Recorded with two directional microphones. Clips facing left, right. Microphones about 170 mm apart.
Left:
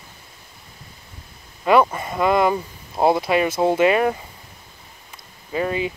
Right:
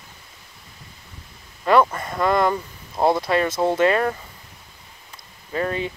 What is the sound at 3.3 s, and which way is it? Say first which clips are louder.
Speech: left 2 dB; 10° left (ahead or behind).